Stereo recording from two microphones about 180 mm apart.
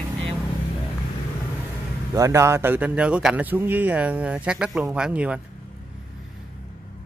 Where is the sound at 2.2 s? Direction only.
15° right (ahead or behind).